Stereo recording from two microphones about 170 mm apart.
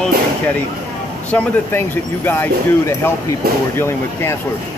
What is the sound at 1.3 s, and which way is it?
Speech, 10° left (ahead or behind).